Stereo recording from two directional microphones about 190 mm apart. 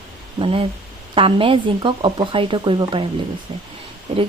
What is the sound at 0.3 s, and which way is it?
Speech, 30° right (ahead or behind).